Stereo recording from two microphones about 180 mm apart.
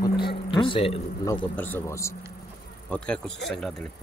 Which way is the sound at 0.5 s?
30° left (ahead or behind).